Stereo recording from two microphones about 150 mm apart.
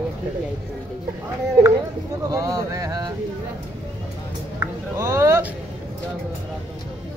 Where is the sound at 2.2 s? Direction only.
20° right (ahead or behind).